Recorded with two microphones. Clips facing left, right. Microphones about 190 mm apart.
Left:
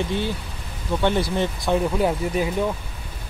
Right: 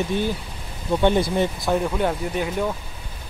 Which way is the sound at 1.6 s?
Centre (ahead or behind).